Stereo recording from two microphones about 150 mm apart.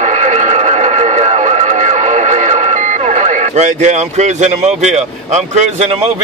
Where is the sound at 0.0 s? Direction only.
50° right (ahead or behind).